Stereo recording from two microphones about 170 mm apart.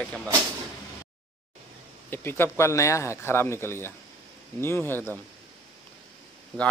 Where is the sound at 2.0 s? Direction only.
15° left (ahead or behind).